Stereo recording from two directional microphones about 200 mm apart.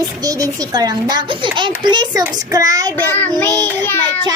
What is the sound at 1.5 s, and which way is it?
Speech, 25° right (ahead or behind).